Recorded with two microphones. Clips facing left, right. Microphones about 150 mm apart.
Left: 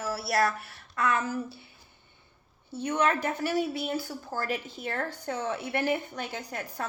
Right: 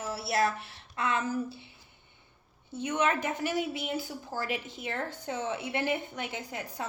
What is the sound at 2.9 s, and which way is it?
Speech, 20° right (ahead or behind).